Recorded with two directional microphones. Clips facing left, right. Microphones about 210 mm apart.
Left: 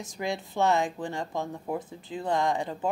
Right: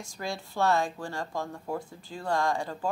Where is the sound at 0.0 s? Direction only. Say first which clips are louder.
Left 4 dB; 20° left (ahead or behind).